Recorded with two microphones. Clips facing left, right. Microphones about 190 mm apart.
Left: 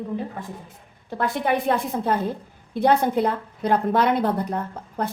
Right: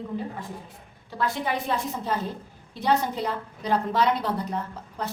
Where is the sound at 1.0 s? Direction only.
55° left (ahead or behind).